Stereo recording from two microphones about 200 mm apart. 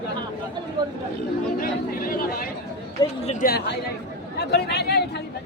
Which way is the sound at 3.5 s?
50° left (ahead or behind).